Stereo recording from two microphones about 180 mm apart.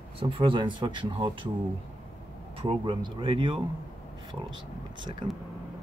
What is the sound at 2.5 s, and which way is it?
Speech, 30° right (ahead or behind).